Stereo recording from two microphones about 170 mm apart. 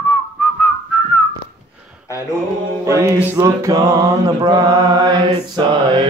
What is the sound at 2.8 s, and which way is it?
Mantra, 15° right (ahead or behind).